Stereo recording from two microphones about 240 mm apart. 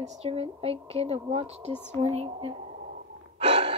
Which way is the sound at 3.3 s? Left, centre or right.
Right.